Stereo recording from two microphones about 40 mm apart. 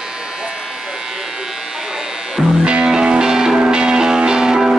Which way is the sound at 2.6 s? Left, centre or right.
Right.